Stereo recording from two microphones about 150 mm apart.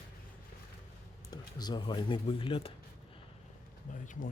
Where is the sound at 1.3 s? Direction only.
25° left (ahead or behind).